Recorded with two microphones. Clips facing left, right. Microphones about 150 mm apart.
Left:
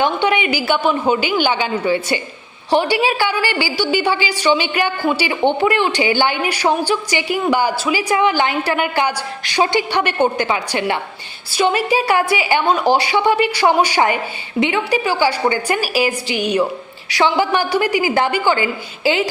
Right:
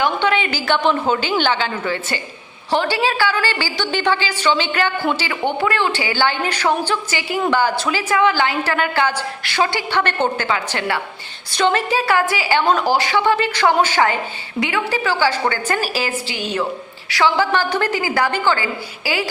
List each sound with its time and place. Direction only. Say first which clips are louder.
0.0 s a woman's voice: left 2 dB; 15° left (ahead or behind)